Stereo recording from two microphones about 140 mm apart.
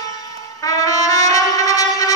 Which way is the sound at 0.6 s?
25° left (ahead or behind).